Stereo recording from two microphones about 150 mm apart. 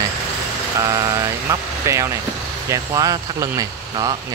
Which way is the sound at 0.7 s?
20° right (ahead or behind).